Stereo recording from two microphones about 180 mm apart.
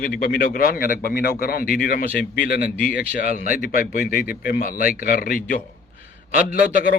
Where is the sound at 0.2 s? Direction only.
55° left (ahead or behind).